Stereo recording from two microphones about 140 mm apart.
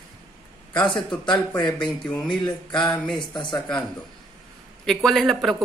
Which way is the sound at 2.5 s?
30° left (ahead or behind).